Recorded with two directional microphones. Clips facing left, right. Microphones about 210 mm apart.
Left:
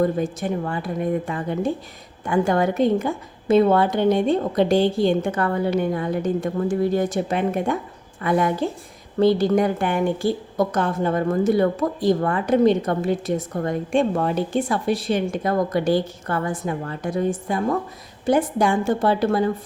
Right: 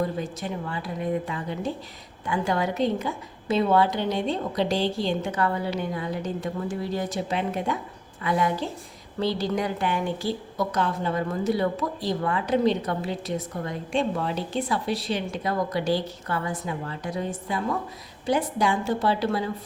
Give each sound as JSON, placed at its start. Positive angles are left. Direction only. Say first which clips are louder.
{"t": 0.0, "sound": "a woman's voice", "louder": "left 7 dB", "side_deg": 50}